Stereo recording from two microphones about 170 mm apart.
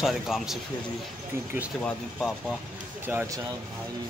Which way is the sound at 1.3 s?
15° right (ahead or behind).